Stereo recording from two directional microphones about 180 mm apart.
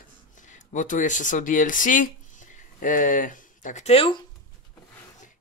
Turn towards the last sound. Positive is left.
turn(degrees=30)  # may be behind; listen again after turning